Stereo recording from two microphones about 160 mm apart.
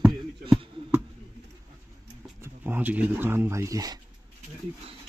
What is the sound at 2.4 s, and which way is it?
Speech, 10° right (ahead or behind).